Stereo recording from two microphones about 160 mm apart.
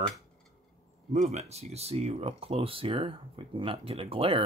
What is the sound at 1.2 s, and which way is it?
Speech, 45° right (ahead or behind).